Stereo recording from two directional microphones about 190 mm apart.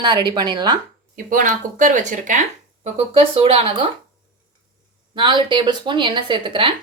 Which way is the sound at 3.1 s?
30° right (ahead or behind).